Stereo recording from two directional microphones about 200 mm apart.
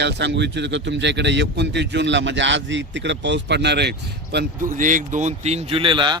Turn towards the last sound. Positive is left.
turn(degrees=-25)  # may be behind; listen again after turning